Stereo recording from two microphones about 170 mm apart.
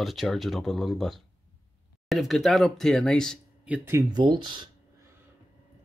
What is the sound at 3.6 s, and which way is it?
Speech, 10° right (ahead or behind).